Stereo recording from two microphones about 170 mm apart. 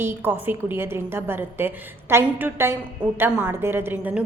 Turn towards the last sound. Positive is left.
turn(degrees=-10)  # may be behind; listen again after turning